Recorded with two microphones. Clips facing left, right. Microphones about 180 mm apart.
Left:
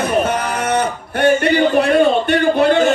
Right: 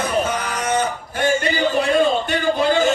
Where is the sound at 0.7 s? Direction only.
65° left (ahead or behind).